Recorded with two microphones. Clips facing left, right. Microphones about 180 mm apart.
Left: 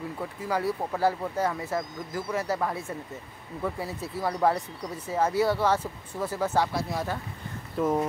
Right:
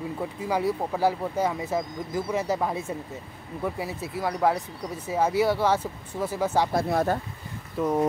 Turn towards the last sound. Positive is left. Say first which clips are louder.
# even
turn(degrees=0)  # may be behind; listen again after turning